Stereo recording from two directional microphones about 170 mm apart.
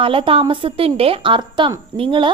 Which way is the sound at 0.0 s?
30° right (ahead or behind).